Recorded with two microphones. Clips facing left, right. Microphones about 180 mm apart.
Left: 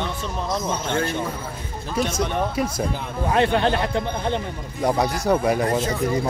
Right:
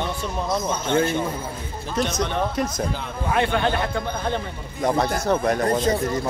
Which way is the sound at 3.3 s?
30° left (ahead or behind).